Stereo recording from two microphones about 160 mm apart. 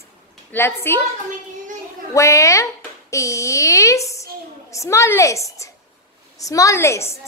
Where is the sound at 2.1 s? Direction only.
20° left (ahead or behind).